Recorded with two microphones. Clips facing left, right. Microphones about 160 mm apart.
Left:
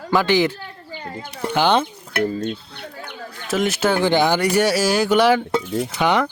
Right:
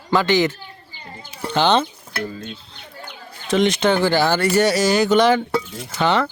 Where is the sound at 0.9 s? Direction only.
65° left (ahead or behind).